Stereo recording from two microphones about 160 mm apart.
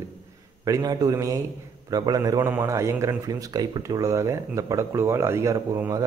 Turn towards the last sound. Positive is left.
turn(degrees=-20)  # may be behind; listen again after turning